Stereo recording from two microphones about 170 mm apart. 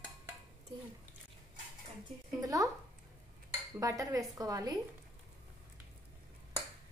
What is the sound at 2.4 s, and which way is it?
Speech, 20° right (ahead or behind).